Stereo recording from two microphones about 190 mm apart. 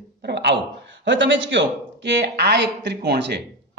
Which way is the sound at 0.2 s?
65° right (ahead or behind).